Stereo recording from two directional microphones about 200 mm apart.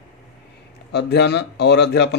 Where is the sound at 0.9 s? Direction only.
55° left (ahead or behind).